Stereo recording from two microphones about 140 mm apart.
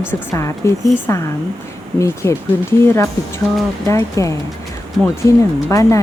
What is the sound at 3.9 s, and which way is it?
A woman's voice, 20° left (ahead or behind).